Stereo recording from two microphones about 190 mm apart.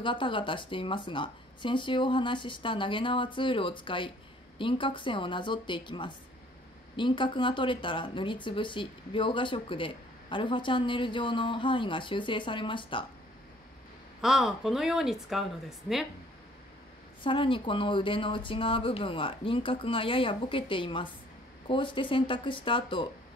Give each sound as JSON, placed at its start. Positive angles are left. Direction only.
{"t": 0.0, "sound": "speech", "side_deg": 25}
{"t": 14.2, "sound": "speech", "side_deg": 0}
{"t": 17.2, "sound": "speech", "side_deg": 25}